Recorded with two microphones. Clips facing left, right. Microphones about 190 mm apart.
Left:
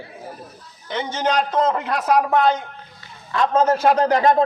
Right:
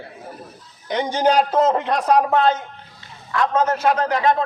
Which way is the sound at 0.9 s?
15° right (ahead or behind).